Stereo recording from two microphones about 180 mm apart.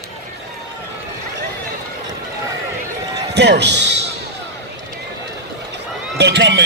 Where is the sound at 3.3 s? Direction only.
70° right (ahead or behind).